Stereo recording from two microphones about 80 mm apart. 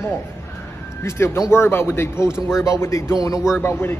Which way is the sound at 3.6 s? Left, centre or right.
Left.